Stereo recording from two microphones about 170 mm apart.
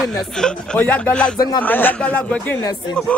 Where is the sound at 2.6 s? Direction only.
20° left (ahead or behind).